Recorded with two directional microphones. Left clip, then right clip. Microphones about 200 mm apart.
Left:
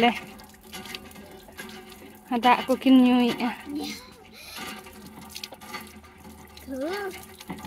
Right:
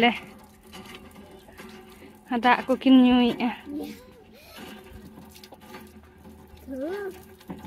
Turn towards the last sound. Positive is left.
turn(degrees=20)  # may be behind; listen again after turning